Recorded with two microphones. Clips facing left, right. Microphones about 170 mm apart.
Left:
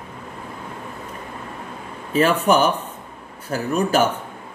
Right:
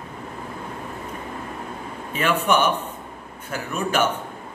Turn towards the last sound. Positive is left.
turn(degrees=35)  # may be behind; listen again after turning